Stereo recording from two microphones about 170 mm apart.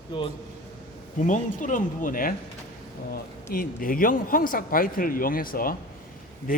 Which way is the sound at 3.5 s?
55° left (ahead or behind).